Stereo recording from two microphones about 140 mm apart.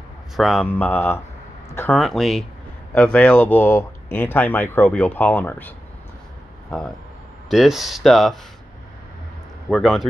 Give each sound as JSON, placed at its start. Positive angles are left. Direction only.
{"t": 0.4, "sound": "speech", "side_deg": 5}
{"t": 1.7, "sound": "a sound", "side_deg": 15}
{"t": 2.0, "sound": "speech", "side_deg": 0}
{"t": 7.4, "sound": "speech", "side_deg": 0}
{"t": 9.7, "sound": "speech", "side_deg": 0}